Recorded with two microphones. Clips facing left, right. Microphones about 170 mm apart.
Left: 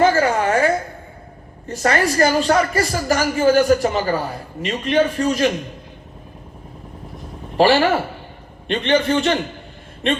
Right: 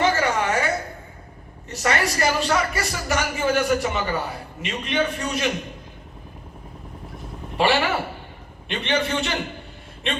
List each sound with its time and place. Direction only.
0.0 s a sound: 35° left (ahead or behind)
1.6 s a woman's voice: 35° left (ahead or behind)
7.5 s a woman's voice: 35° left (ahead or behind)